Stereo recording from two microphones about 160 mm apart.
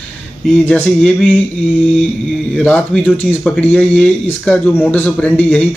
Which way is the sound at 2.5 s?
5° left (ahead or behind).